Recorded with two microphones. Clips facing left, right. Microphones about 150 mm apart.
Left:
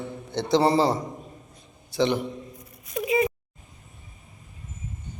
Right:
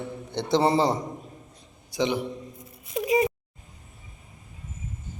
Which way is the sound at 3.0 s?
25° right (ahead or behind).